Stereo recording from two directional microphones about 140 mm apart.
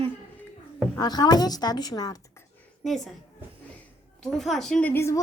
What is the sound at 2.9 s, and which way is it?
Speech, centre (ahead or behind).